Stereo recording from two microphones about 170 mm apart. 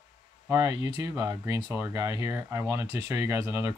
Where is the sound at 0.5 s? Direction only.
20° right (ahead or behind).